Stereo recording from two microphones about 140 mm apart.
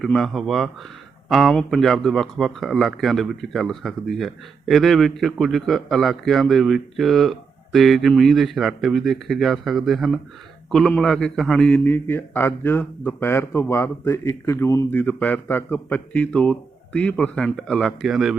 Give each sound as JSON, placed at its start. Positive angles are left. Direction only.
{"t": 0.0, "sound": "speech", "side_deg": 0}